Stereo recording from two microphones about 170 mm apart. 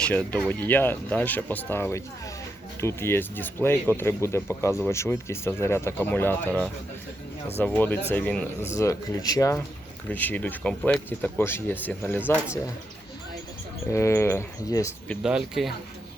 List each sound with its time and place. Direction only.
0.0 s speech: 10° left (ahead or behind)
8.8 s speech: 20° left (ahead or behind)
13.9 s speech: 15° left (ahead or behind)
15.2 s speech: 5° right (ahead or behind)